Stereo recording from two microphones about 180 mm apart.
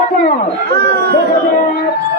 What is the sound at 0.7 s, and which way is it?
Speech, 60° right (ahead or behind).